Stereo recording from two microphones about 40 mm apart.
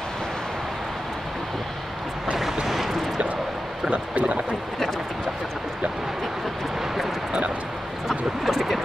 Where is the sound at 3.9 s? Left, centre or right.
Right.